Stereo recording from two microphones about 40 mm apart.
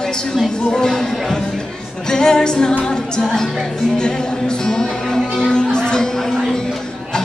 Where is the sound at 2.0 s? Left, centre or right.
Centre.